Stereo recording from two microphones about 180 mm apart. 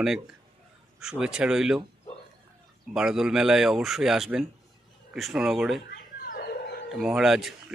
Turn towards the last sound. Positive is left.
turn(degrees=0)  # may be behind; listen again after turning